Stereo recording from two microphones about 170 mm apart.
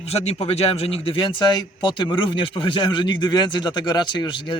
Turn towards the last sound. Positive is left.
turn(degrees=25)  # may be behind; listen again after turning